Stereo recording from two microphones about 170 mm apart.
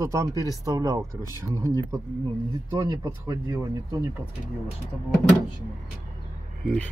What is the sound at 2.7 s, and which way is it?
Speech, 20° right (ahead or behind).